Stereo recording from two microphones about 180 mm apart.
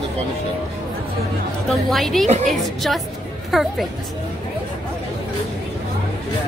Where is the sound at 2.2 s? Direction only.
45° right (ahead or behind).